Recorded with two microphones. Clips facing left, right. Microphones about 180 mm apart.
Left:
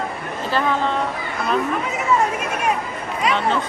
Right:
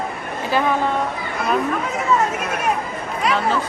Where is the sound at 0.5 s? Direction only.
10° right (ahead or behind).